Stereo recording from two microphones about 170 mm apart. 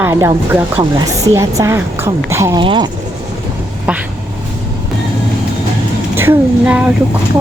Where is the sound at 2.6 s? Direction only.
30° right (ahead or behind).